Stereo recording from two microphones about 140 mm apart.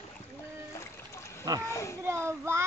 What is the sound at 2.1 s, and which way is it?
Speech, 20° right (ahead or behind).